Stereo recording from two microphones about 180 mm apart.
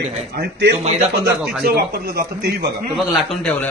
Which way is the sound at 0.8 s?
35° right (ahead or behind).